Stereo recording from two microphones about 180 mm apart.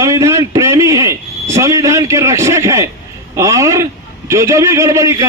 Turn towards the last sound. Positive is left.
turn(degrees=-15)  # may be behind; listen again after turning